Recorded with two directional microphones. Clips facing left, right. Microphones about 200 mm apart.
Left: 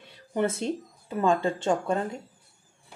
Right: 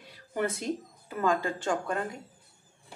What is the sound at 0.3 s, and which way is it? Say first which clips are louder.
Speech: left 4 dB; 25° left (ahead or behind).